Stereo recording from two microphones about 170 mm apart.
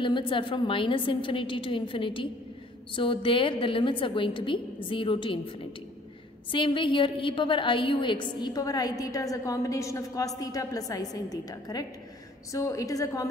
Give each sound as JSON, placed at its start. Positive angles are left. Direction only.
{"t": 0.0, "sound": "a woman's voice", "side_deg": 30}
{"t": 6.5, "sound": "a woman's voice", "side_deg": 30}